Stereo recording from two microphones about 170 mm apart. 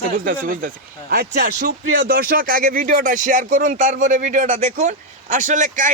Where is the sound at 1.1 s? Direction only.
65° right (ahead or behind).